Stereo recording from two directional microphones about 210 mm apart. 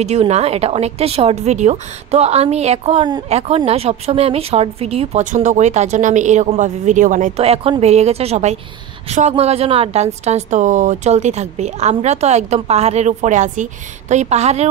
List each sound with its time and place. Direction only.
0.0 s a woman's voice: 30° right (ahead or behind)